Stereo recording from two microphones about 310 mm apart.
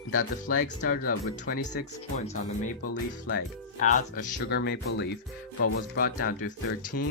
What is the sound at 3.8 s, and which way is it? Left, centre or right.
Speech, left.